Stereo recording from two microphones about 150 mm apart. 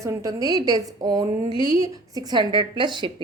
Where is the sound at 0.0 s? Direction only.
20° right (ahead or behind).